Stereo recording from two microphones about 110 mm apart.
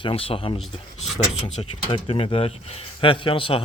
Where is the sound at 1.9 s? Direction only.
55° left (ahead or behind).